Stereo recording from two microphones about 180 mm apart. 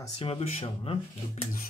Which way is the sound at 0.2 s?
35° left (ahead or behind).